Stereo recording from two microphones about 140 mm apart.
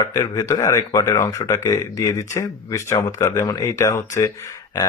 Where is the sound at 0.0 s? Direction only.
25° left (ahead or behind).